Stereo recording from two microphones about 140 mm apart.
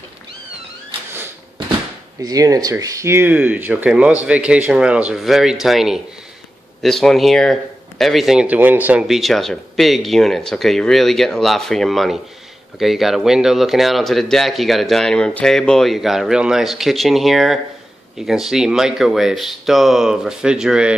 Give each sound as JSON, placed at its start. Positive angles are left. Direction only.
{"t": 2.2, "sound": "speech", "side_deg": -25}